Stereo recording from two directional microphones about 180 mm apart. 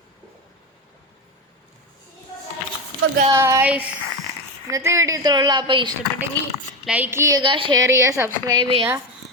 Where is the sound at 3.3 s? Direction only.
15° right (ahead or behind).